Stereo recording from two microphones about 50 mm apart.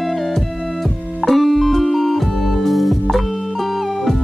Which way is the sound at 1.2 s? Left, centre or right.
Centre.